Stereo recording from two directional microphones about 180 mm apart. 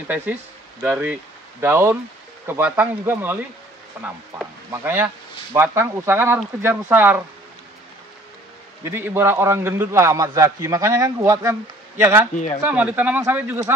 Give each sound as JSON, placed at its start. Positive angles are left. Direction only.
{"t": 0.8, "sound": "a man's voice", "side_deg": -10}
{"t": 8.8, "sound": "a man's voice", "side_deg": -10}
{"t": 12.6, "sound": "a man's voice", "side_deg": -10}